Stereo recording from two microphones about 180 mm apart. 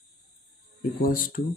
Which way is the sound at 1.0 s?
50° left (ahead or behind).